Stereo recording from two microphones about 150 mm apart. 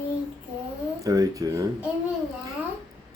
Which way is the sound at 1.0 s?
25° right (ahead or behind).